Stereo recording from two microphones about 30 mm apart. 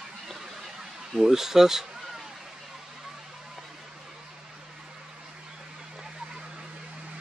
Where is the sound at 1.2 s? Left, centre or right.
Centre.